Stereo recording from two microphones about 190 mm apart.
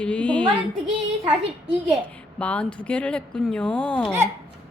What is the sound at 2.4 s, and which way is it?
Speech, 5° left (ahead or behind).